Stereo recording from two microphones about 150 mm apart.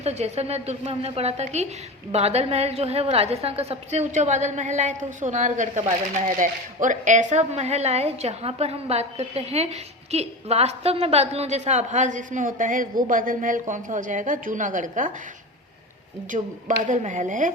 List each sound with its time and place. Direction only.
0.0 s a woman's voice: 45° right (ahead or behind)
16.3 s a woman's voice: 60° right (ahead or behind)